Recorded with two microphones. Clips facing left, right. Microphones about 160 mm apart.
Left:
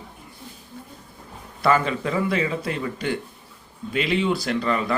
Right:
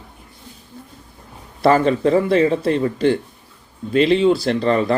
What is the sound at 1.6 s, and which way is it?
A man's voice, 35° right (ahead or behind).